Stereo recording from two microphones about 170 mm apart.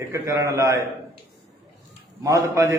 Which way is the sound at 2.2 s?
20° right (ahead or behind).